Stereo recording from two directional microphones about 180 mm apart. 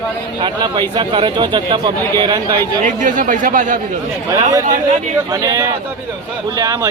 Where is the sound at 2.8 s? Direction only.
45° right (ahead or behind).